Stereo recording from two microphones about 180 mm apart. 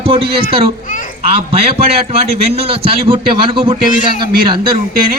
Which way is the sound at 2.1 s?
35° right (ahead or behind).